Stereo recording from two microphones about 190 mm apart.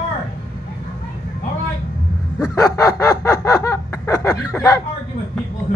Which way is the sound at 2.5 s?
15° left (ahead or behind).